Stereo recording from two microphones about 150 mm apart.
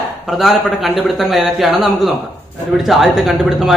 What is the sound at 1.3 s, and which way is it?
Speech, centre (ahead or behind).